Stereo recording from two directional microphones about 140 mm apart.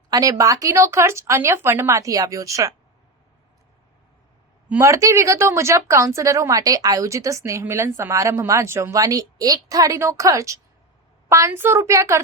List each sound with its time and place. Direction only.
0.1 s speech: 25° right (ahead or behind)
4.7 s speech: 20° right (ahead or behind)